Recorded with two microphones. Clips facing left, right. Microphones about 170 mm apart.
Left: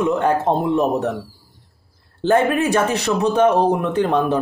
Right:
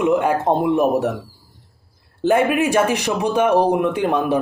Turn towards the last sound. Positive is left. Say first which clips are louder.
# left 1 dB
turn(degrees=-10)  # may be behind; listen again after turning